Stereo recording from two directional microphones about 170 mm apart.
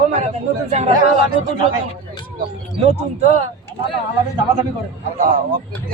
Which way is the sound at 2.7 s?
35° right (ahead or behind).